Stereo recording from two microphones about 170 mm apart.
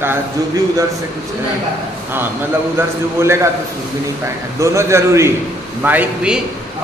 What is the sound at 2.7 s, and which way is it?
Speech, 15° right (ahead or behind).